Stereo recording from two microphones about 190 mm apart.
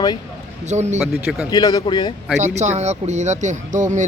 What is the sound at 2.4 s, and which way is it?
Speech, 35° right (ahead or behind).